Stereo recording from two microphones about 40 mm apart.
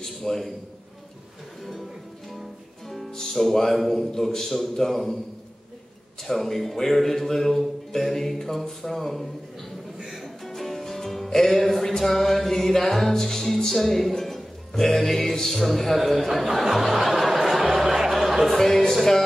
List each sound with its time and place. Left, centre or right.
0.0 s a man's voice: centre
2.9 s music: centre
3.2 s speech: centre
6.2 s speech: centre
9.9 s music: centre
10.2 s music: centre
15.6 s speech: centre
18.5 s speech: centre